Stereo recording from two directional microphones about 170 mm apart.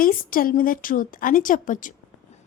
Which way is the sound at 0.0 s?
55° left (ahead or behind).